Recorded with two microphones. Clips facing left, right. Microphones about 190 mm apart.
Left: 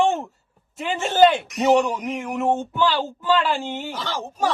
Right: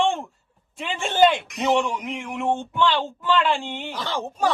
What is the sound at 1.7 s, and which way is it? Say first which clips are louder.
Speech: left 4 dB; 40° left (ahead or behind).